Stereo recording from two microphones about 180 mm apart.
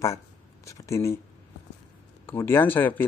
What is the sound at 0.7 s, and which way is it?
Speech, 15° left (ahead or behind).